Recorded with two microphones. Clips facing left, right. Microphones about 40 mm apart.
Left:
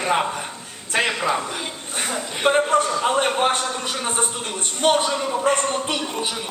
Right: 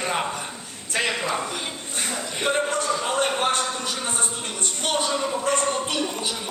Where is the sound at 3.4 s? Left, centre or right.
Left.